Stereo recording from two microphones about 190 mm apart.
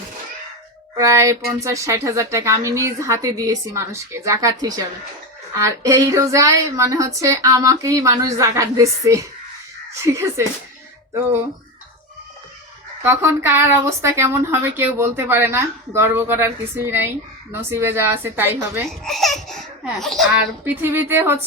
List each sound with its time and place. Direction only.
0.9 s a woman's voice: 15° right (ahead or behind)
13.0 s a woman's voice: 10° right (ahead or behind)
18.9 s speech: centre (ahead or behind)
20.8 s a woman's voice: 10° right (ahead or behind)